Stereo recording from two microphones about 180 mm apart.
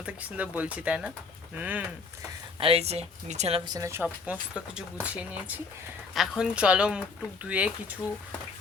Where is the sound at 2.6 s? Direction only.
35° right (ahead or behind).